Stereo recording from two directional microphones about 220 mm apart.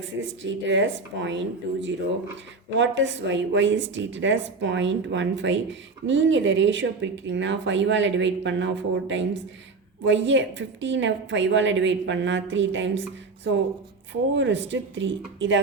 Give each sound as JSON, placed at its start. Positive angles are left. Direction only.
{"t": 0.0, "sound": "a woman's voice", "side_deg": -60}